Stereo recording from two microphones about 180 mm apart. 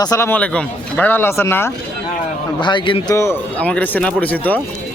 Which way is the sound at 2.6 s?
25° left (ahead or behind).